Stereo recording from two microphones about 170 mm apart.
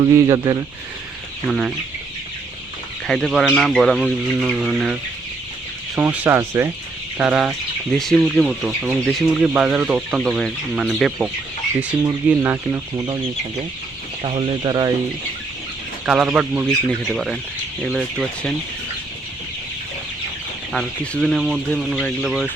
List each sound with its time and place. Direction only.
0.0 s speech: 20° right (ahead or behind)
1.5 s speech: centre (ahead or behind)
3.1 s speech: centre (ahead or behind)
6.0 s speech: 10° right (ahead or behind)
11.8 s speech: 10° right (ahead or behind)
14.2 s speech: 35° right (ahead or behind)
16.0 s speech: 5° right (ahead or behind)
20.7 s speech: 5° left (ahead or behind)